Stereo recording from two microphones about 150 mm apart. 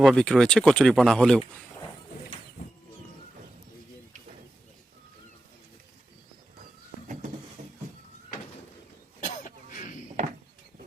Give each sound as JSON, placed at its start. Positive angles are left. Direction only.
{"t": 0.0, "sound": "speech", "side_deg": 0}
{"t": 9.2, "sound": "cough", "side_deg": 60}